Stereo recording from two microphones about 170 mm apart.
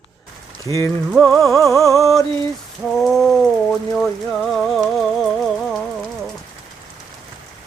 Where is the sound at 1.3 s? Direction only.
Centre (ahead or behind).